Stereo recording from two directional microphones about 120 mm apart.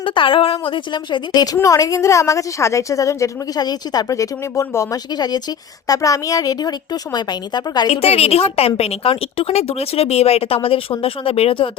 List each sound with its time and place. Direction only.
0.0 s a woman's voice: 45° left (ahead or behind)
8.0 s a woman's voice: 60° left (ahead or behind)